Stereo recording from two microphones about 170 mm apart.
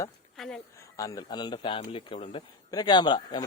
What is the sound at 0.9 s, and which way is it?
A man's voice, 20° left (ahead or behind).